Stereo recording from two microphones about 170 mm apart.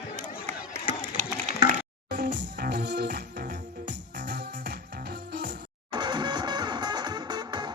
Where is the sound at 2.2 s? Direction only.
85° right.